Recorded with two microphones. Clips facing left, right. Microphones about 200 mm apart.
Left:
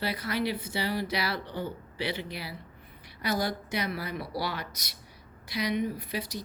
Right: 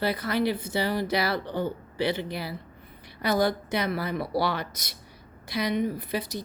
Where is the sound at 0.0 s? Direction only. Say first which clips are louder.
Right 5 dB; 50° right (ahead or behind).